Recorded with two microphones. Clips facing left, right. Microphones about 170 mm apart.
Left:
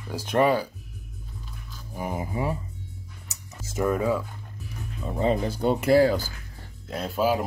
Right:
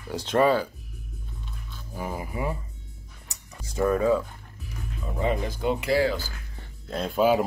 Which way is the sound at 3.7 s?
20° left (ahead or behind).